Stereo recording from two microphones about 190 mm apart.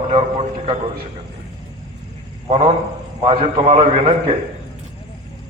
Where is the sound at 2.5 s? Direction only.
35° right (ahead or behind).